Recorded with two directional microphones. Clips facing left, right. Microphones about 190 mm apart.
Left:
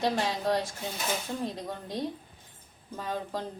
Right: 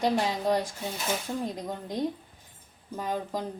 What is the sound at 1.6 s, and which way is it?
Speech, 15° right (ahead or behind).